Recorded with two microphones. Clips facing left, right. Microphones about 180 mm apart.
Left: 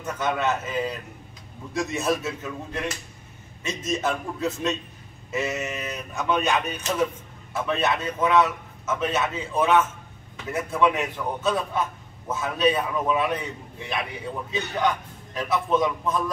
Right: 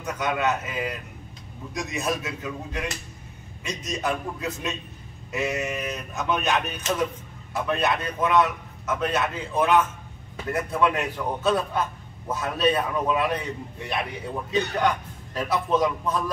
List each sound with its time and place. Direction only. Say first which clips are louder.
0.0 s speech: even; centre (ahead or behind)
3.6 s speech: left 2 dB; centre (ahead or behind)